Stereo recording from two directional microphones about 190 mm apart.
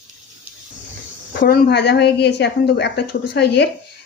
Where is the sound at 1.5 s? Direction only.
60° left (ahead or behind).